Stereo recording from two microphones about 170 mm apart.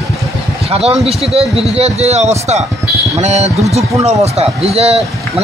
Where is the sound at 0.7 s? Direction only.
35° right (ahead or behind).